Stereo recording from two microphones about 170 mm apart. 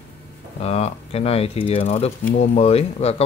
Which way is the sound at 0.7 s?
35° left (ahead or behind).